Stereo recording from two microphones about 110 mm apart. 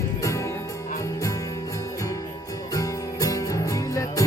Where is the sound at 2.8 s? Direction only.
30° left (ahead or behind).